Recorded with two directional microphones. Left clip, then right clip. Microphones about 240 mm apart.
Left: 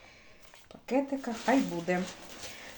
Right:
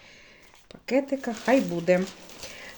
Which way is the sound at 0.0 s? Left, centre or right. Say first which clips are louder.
Right 4 dB; right.